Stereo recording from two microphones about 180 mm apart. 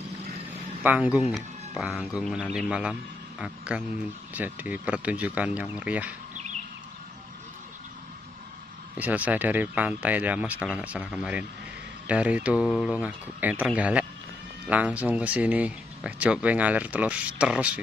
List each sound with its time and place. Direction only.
0.8 s a man's voice: 5° right (ahead or behind)
8.9 s speech: 10° right (ahead or behind)